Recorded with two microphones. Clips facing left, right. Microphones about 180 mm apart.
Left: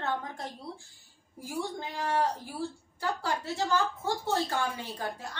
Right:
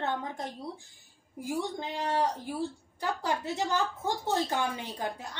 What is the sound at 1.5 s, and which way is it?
A woman's voice, 20° right (ahead or behind).